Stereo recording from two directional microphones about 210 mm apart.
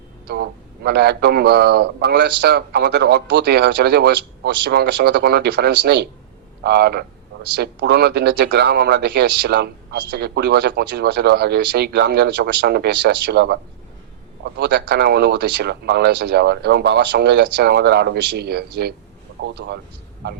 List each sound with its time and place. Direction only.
0.3 s speech: 50° right (ahead or behind)